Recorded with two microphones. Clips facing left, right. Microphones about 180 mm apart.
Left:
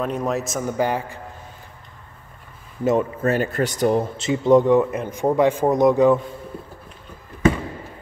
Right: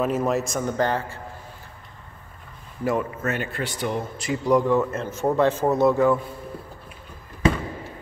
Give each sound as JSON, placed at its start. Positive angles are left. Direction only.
{"t": 0.0, "sound": "a man's voice", "side_deg": -5}
{"t": 2.8, "sound": "speech", "side_deg": 25}
{"t": 4.2, "sound": "speech", "side_deg": 25}